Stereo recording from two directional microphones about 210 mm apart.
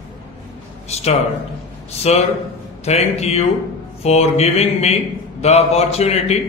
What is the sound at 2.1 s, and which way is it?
A man's voice, 30° left (ahead or behind).